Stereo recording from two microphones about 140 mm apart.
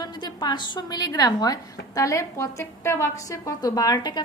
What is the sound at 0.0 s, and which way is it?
A woman's voice, 30° left (ahead or behind).